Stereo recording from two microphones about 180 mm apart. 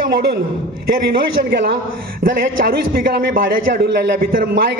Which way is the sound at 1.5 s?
65° right (ahead or behind).